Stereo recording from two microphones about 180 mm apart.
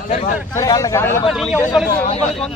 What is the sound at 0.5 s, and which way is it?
Speech, 20° left (ahead or behind).